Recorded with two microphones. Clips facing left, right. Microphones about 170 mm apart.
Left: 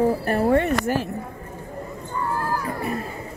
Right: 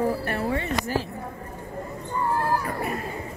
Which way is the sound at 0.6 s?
60° left (ahead or behind).